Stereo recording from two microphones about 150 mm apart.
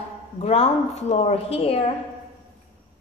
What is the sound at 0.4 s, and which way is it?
A woman's voice, 40° left (ahead or behind).